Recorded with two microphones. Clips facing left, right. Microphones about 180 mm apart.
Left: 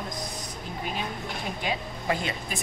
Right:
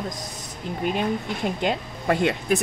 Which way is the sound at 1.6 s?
65° right (ahead or behind).